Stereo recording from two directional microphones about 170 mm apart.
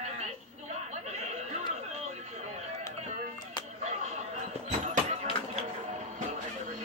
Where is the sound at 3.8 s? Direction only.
40° right (ahead or behind).